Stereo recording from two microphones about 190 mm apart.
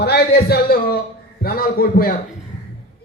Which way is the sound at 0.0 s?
55° left (ahead or behind).